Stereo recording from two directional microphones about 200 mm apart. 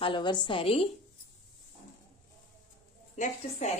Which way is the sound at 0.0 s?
25° left (ahead or behind).